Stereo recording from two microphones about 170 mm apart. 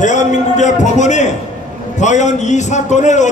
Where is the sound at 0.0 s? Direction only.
45° left (ahead or behind).